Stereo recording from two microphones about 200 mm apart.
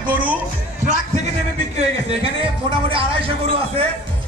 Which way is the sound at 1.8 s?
25° right (ahead or behind).